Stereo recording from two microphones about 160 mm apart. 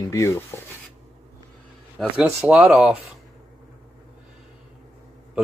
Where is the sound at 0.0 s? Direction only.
20° left (ahead or behind).